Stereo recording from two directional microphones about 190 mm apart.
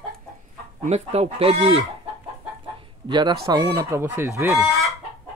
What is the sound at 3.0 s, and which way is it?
Speech, 25° right (ahead or behind).